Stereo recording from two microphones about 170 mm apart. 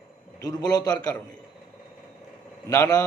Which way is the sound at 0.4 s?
20° left (ahead or behind).